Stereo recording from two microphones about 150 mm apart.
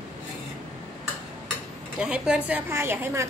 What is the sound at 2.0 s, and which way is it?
Speech, 5° right (ahead or behind).